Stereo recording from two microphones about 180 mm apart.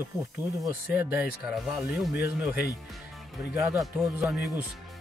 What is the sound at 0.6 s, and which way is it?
Speech, 10° right (ahead or behind).